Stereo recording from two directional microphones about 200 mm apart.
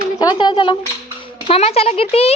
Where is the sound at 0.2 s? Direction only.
20° left (ahead or behind).